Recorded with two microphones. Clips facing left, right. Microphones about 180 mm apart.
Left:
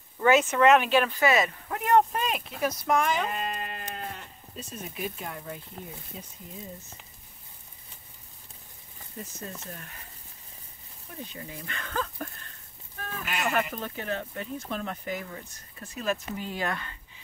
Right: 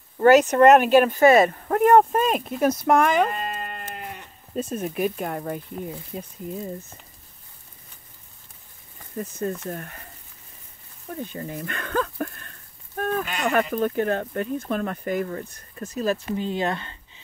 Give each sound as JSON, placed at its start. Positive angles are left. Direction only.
{"t": 0.2, "sound": "speech", "side_deg": -40}
{"t": 3.3, "sound": "sheep", "side_deg": 0}
{"t": 4.6, "sound": "speech", "side_deg": -55}
{"t": 9.2, "sound": "speech", "side_deg": -60}
{"t": 11.3, "sound": "speech", "side_deg": -55}
{"t": 12.9, "sound": "a sound", "side_deg": -55}
{"t": 13.6, "sound": "speech", "side_deg": -50}
{"t": 15.9, "sound": "speech", "side_deg": -35}
{"t": 16.3, "sound": "speech", "side_deg": -25}